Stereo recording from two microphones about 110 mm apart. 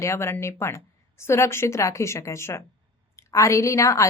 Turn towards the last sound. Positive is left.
turn(degrees=30)  # may be behind; listen again after turning